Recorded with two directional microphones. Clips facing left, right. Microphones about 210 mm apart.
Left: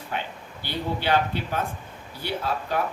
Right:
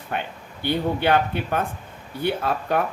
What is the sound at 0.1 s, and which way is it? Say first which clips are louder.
Speech: right 3 dB; 55° right (ahead or behind).